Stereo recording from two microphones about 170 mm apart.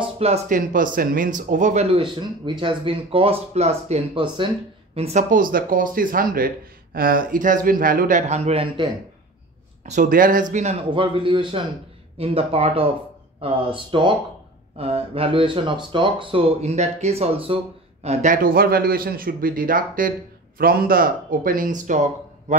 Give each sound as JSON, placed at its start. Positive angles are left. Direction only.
{"t": 0.0, "sound": "speech", "side_deg": -40}
{"t": 0.6, "sound": "speech", "side_deg": -55}
{"t": 4.9, "sound": "speech", "side_deg": -40}
{"t": 9.8, "sound": "speech", "side_deg": -50}